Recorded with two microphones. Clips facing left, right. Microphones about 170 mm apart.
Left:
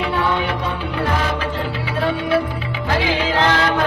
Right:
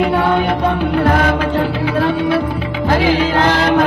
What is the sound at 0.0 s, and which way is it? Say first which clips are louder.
Music: right 6 dB; 50° right (ahead or behind).